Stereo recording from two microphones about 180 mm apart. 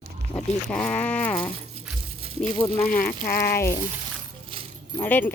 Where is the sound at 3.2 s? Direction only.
55° left (ahead or behind).